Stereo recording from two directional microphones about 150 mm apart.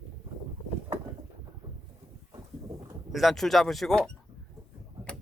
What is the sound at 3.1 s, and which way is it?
Speech, centre (ahead or behind).